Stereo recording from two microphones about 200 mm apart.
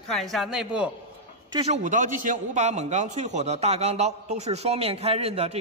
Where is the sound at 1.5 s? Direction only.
30° right (ahead or behind).